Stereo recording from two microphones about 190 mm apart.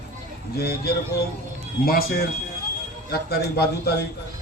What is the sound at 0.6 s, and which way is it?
A man's voice, 55° left (ahead or behind).